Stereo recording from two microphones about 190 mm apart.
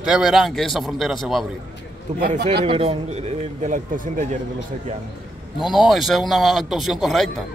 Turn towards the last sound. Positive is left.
turn(degrees=0)  # may be behind; listen again after turning